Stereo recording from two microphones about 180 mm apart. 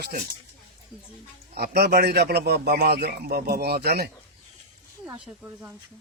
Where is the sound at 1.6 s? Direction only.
65° right (ahead or behind).